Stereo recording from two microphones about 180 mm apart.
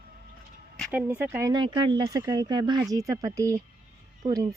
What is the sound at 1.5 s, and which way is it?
A woman's voice, 25° right (ahead or behind).